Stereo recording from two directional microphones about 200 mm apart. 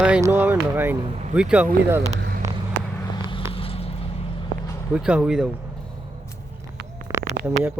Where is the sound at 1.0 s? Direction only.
30° right (ahead or behind).